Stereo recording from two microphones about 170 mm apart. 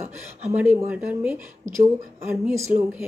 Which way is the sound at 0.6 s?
10° right (ahead or behind).